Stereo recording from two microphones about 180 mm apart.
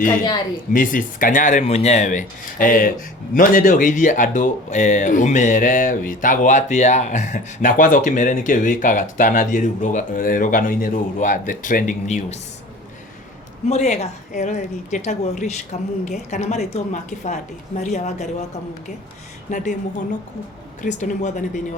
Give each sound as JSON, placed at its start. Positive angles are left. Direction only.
{"t": 0.7, "sound": "speech", "side_deg": 50}
{"t": 13.7, "sound": "a woman's voice", "side_deg": 40}
{"t": 19.5, "sound": "speech", "side_deg": 45}
{"t": 20.8, "sound": "speech", "side_deg": 45}